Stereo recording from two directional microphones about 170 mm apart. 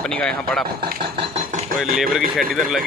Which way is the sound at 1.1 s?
40° right (ahead or behind).